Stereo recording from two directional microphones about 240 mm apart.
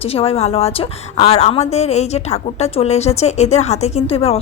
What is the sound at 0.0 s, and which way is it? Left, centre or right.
A woman's voice, left.